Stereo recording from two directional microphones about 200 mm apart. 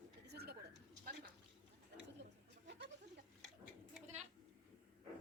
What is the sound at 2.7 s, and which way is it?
Goat, 60° right (ahead or behind).